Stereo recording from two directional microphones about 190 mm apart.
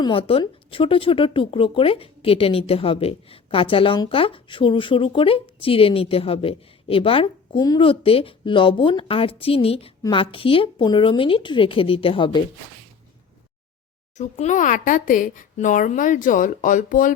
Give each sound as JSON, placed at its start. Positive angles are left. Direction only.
{"t": 0.0, "sound": "speech", "side_deg": 30}
{"t": 14.2, "sound": "speech", "side_deg": 40}